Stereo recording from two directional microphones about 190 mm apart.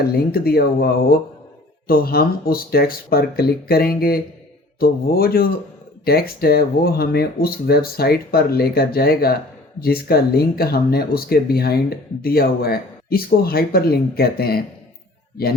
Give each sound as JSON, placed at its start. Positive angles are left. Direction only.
{"t": 0.0, "sound": "speech", "side_deg": 50}
{"t": 1.9, "sound": "speech", "side_deg": 50}